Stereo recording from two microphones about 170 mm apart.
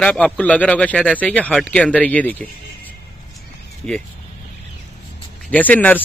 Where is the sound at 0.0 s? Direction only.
5° left (ahead or behind).